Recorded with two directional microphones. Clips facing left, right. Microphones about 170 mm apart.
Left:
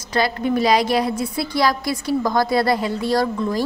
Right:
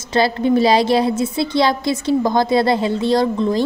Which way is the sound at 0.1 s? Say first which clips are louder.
Right 4 dB; 25° right (ahead or behind).